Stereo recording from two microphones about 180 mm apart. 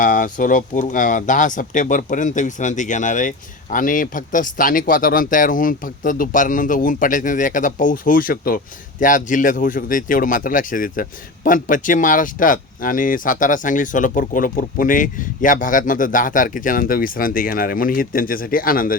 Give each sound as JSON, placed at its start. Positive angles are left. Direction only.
{"t": 0.0, "sound": "speech", "side_deg": 45}